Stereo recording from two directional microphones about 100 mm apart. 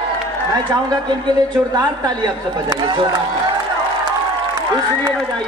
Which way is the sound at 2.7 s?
45° right (ahead or behind).